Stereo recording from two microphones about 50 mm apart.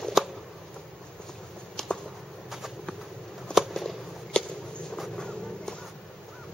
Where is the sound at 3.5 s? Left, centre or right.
Centre.